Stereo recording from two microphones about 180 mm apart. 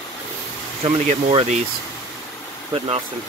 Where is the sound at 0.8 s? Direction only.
35° right (ahead or behind).